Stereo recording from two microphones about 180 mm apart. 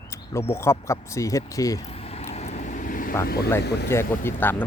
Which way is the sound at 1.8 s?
35° left (ahead or behind).